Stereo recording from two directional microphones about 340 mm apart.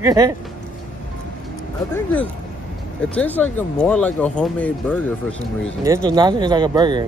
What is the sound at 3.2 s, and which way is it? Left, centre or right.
Speech, centre.